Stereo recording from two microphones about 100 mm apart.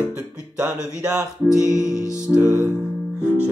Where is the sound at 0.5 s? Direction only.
10° right (ahead or behind).